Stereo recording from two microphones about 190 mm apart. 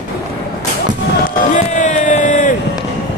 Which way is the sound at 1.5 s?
40° left (ahead or behind).